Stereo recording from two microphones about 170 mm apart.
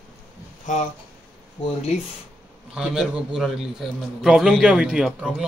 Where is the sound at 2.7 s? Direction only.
5° right (ahead or behind).